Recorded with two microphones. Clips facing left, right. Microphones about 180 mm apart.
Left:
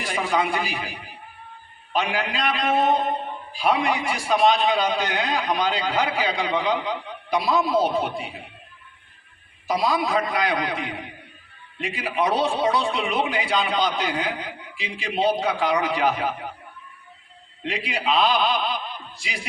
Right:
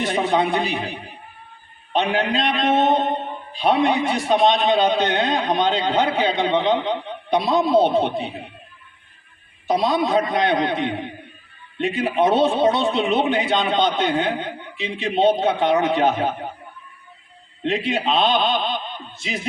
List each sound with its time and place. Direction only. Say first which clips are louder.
0.0 s a man's voice: right 4 dB; 20° right (ahead or behind)
9.6 s a man's voice: right 4 dB; 25° right (ahead or behind)
17.8 s a man's voice: even; 25° right (ahead or behind)